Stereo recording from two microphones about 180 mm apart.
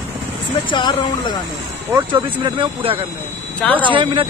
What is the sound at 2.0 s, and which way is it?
Speech, 30° right (ahead or behind).